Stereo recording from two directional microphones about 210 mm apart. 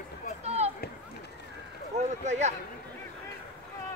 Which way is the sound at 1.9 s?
35° right (ahead or behind).